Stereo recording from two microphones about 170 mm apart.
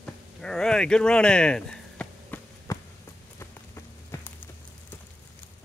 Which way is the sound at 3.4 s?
15° left (ahead or behind).